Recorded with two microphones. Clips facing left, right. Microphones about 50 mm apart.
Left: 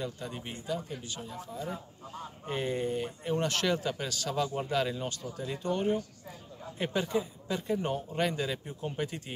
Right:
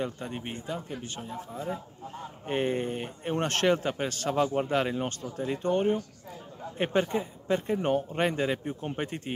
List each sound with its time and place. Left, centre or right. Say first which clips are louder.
0.0 s a man's voice: right 4 dB; right